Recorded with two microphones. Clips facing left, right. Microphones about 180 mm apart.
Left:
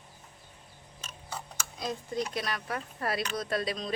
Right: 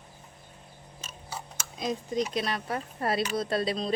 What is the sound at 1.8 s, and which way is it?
A woman's voice, 20° right (ahead or behind).